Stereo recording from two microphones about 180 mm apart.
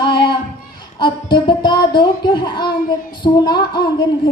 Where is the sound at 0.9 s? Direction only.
25° left (ahead or behind).